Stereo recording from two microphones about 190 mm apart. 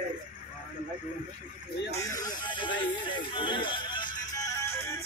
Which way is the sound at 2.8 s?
25° left (ahead or behind).